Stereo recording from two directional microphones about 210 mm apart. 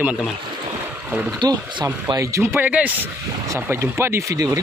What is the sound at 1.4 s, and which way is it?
Speech, 20° right (ahead or behind).